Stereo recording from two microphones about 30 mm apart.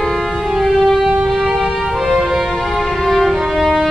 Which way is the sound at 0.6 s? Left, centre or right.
Centre.